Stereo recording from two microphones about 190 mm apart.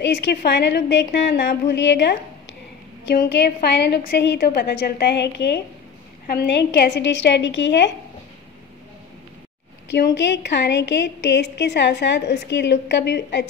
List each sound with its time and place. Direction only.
0.0 s a woman's voice: 65° left (ahead or behind)
9.8 s a woman's voice: 65° left (ahead or behind)